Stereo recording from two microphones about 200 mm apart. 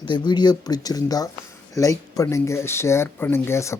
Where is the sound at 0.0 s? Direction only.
25° left (ahead or behind).